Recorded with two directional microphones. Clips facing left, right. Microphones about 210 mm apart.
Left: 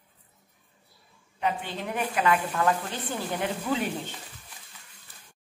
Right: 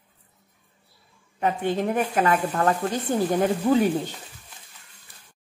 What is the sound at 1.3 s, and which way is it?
A woman's voice, 45° right (ahead or behind).